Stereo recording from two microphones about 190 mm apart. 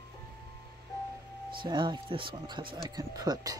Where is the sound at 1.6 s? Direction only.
25° right (ahead or behind).